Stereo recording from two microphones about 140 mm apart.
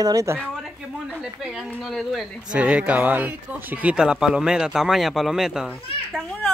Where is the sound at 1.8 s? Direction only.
Centre (ahead or behind).